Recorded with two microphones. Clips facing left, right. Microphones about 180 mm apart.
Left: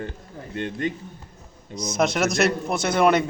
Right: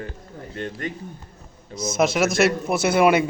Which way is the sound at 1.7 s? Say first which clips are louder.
Right 2 dB; centre (ahead or behind).